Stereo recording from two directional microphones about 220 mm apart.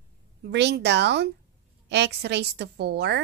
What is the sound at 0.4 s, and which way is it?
A woman's voice, 50° right (ahead or behind).